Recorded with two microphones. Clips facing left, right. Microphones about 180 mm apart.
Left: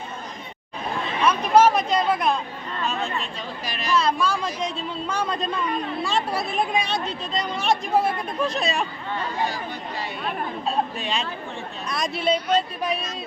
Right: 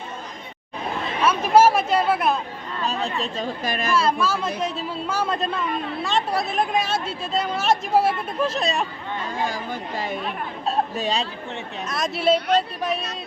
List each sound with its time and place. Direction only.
1.2 s speech: 5° right (ahead or behind)
2.8 s a woman's voice: 35° right (ahead or behind)
3.9 s a woman's voice: 5° right (ahead or behind)
9.4 s a woman's voice: 45° right (ahead or behind)
11.9 s a woman's voice: centre (ahead or behind)